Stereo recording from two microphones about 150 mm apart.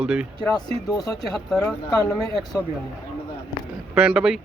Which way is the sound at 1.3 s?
5° left (ahead or behind).